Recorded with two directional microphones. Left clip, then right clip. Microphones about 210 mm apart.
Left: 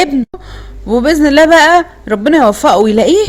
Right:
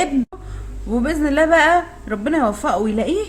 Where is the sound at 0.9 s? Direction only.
40° left (ahead or behind).